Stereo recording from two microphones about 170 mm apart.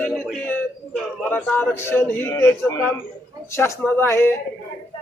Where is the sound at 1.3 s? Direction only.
10° left (ahead or behind).